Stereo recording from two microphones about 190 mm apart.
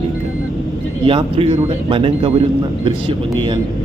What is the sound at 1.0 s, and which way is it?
A man's voice, 30° right (ahead or behind).